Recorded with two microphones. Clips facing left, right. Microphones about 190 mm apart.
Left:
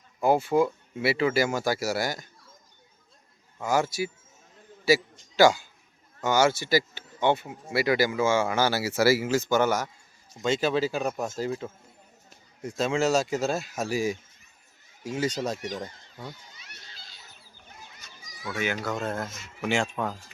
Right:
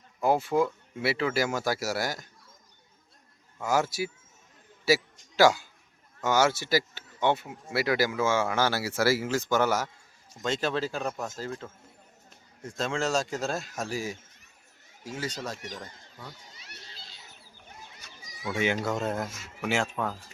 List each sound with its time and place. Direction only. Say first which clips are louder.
0.2 s speech: left 2 dB; centre (ahead or behind)
3.6 s speech: left 1 dB; 5° right (ahead or behind); by 11.7 s 10° left (ahead or behind)
12.7 s speech: left 4 dB; 5° left (ahead or behind)
16.6 s children playing: right 2 dB; 30° right (ahead or behind)
18.3 s speech: right 2 dB; 20° right (ahead or behind)
18.8 s speech: right 1 dB; 5° right (ahead or behind)